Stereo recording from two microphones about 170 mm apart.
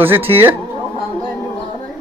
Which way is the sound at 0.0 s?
10° right (ahead or behind).